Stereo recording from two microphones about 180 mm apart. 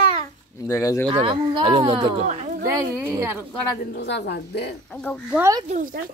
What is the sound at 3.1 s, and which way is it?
Speech, 15° right (ahead or behind).